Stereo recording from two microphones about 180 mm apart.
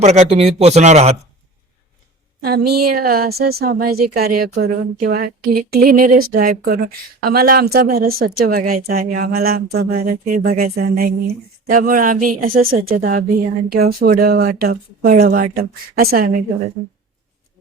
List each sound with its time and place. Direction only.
0.0 s speech: 35° right (ahead or behind)
2.4 s a woman's voice: 60° right (ahead or behind)